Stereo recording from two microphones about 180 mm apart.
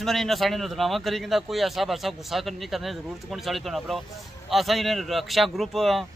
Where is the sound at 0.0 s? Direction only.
Centre (ahead or behind).